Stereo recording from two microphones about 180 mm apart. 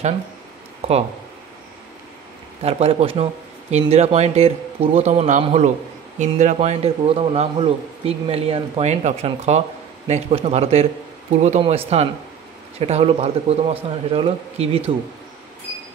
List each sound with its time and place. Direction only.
0.8 s a man's voice: 35° right (ahead or behind)
2.6 s a man's voice: 35° right (ahead or behind)